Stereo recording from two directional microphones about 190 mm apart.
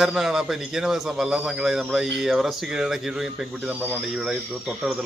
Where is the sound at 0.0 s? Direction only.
Centre (ahead or behind).